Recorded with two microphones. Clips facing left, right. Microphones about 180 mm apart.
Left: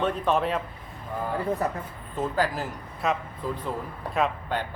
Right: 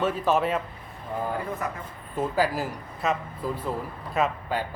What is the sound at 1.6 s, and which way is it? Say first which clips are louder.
Speech: left 4 dB; 35° left (ahead or behind).